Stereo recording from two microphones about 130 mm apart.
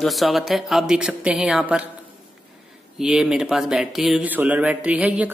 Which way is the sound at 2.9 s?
5° right (ahead or behind).